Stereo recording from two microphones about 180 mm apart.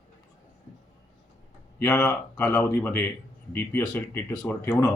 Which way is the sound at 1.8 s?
10° left (ahead or behind).